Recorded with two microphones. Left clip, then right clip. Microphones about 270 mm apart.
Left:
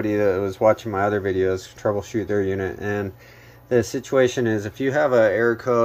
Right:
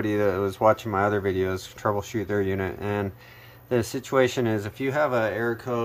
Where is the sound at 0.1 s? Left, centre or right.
Right.